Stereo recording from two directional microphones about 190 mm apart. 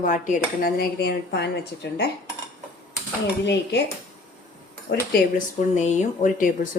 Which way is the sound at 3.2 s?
60° left (ahead or behind).